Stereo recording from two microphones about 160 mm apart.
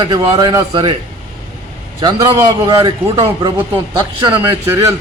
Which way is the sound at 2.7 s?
30° right (ahead or behind).